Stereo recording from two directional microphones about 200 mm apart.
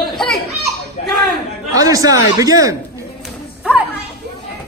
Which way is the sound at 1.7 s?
15° right (ahead or behind).